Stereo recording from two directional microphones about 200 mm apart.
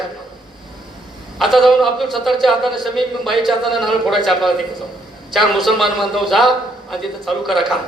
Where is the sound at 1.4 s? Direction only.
Centre (ahead or behind).